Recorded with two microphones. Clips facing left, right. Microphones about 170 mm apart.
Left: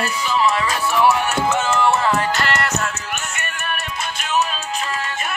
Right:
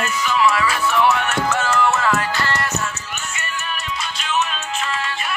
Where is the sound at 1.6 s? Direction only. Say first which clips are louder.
Even; 25° left (ahead or behind).